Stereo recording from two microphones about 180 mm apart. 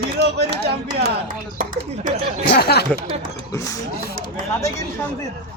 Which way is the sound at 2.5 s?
60° left (ahead or behind).